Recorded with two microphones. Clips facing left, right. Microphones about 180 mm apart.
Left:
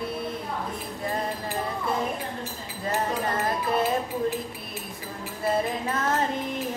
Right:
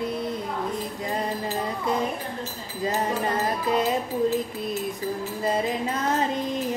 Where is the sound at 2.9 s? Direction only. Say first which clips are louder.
Right 1 dB; 20° right (ahead or behind).